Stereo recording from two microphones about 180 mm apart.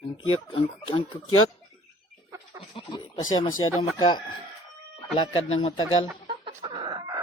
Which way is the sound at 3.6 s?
30° left (ahead or behind).